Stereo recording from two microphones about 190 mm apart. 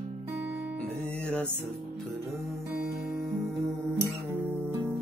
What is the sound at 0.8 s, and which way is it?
Music, 5° left (ahead or behind).